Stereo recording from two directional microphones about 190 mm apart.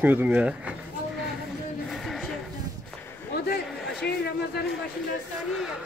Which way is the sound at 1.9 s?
Centre (ahead or behind).